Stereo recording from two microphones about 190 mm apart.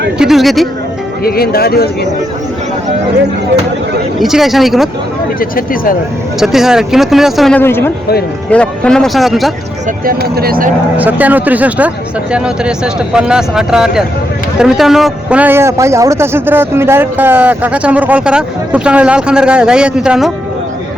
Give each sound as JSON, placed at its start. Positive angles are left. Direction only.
{"t": 0.2, "sound": "speech", "side_deg": 0}
{"t": 1.2, "sound": "speech", "side_deg": 55}
{"t": 4.2, "sound": "speech", "side_deg": 0}
{"t": 5.4, "sound": "speech", "side_deg": 50}
{"t": 6.4, "sound": "speech", "side_deg": 0}
{"t": 7.6, "sound": "speech", "side_deg": 10}
{"t": 10.2, "sound": "speech", "side_deg": -55}
{"t": 10.9, "sound": "a man's voice", "side_deg": -10}